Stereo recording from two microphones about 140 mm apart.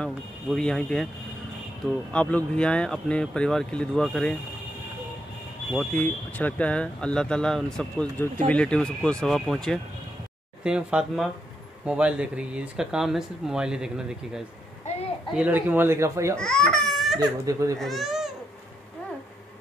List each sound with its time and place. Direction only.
0.0 s speech: 5° left (ahead or behind)
2.1 s speech: 10° left (ahead or behind)
5.8 s speech: 10° left (ahead or behind)
10.6 s speech: 5° right (ahead or behind)
14.8 s a sound: 55° left (ahead or behind)
15.3 s speech: 10° right (ahead or behind)
16.3 s speech: 5° left (ahead or behind)
17.2 s speech: 25° right (ahead or behind)
17.7 s speech: centre (ahead or behind)